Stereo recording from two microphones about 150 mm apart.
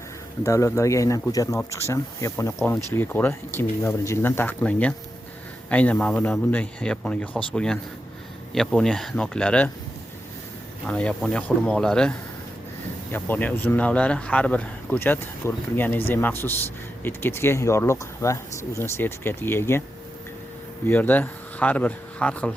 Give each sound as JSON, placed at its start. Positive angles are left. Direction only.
{"t": 0.4, "sound": "speech", "side_deg": 20}
{"t": 10.8, "sound": "speech", "side_deg": 10}
{"t": 20.8, "sound": "speech", "side_deg": 10}